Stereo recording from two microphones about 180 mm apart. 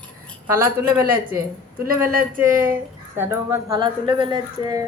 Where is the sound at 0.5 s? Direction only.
15° right (ahead or behind).